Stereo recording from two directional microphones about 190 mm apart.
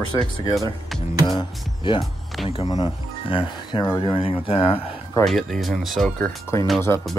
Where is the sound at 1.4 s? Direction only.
25° left (ahead or behind).